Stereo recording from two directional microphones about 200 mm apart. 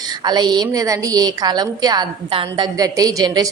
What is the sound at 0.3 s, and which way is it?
A woman's voice, 20° right (ahead or behind).